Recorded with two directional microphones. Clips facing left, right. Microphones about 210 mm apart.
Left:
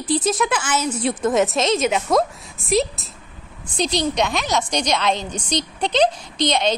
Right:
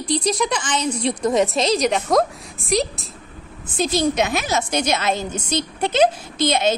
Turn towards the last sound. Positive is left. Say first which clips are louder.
# right 1 dB
turn(degrees=-5)  # may be behind; listen again after turning